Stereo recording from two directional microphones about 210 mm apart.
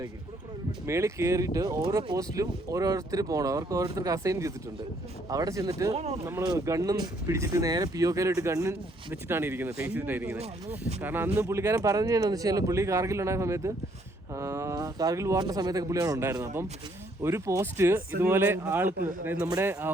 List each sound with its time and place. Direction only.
0.9 s speech: 15° right (ahead or behind)
5.9 s speech: 30° right (ahead or behind)
6.2 s speech: 15° right (ahead or behind)